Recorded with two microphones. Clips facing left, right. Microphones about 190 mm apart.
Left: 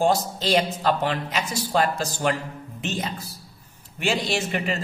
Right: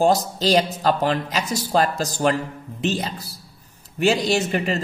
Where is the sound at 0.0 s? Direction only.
40° right (ahead or behind).